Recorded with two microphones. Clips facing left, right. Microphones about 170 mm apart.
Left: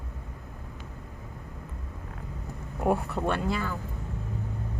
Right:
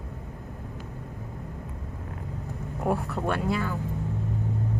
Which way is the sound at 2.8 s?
Centre (ahead or behind).